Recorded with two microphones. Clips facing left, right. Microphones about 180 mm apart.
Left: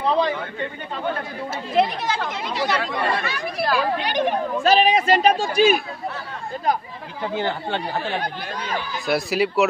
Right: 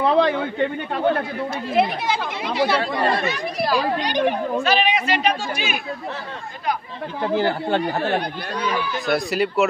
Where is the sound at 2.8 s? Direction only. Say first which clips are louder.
Right 3 dB; 40° right (ahead or behind).